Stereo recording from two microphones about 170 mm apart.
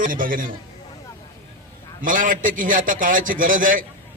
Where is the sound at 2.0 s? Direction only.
50° right (ahead or behind).